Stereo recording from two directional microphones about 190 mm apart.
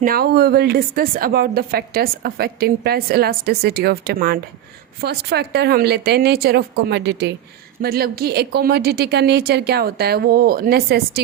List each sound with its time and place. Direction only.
0.0 s a woman's voice: 50° right (ahead or behind)
7.8 s a woman's voice: 55° right (ahead or behind)